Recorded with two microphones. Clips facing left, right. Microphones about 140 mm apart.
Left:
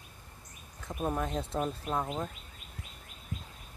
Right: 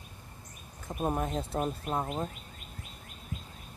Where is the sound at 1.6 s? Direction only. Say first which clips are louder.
Even; 20° right (ahead or behind).